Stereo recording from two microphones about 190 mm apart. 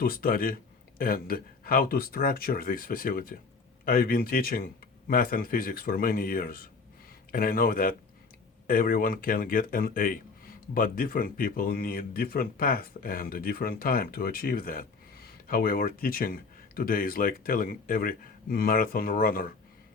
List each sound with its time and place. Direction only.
0.0 s speech: 50° left (ahead or behind)